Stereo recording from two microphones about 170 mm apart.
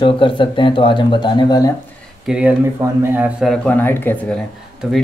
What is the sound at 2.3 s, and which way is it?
Speech, 5° right (ahead or behind).